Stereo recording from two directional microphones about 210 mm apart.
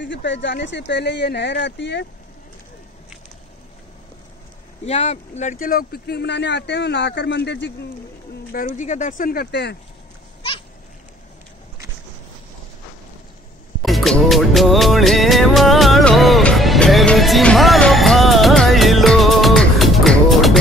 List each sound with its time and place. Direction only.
0.0 s speech: 60° left (ahead or behind)
4.8 s speech: 30° left (ahead or behind); by 7.7 s 55° left (ahead or behind)
8.5 s speech: 45° left (ahead or behind)
13.8 s music: centre (ahead or behind)